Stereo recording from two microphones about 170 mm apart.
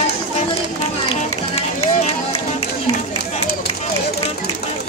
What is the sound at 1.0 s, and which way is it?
Run, 35° left (ahead or behind).